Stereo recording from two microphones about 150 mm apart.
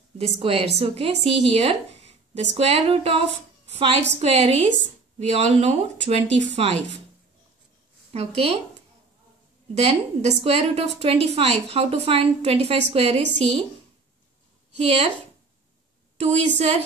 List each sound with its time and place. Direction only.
0.2 s a woman's voice: 40° right (ahead or behind)
8.1 s speech: 45° right (ahead or behind)
9.8 s a woman's voice: 45° right (ahead or behind)
14.8 s speech: 45° right (ahead or behind)
16.2 s speech: 45° right (ahead or behind)